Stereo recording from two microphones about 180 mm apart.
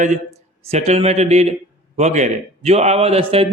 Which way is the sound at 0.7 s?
35° right (ahead or behind).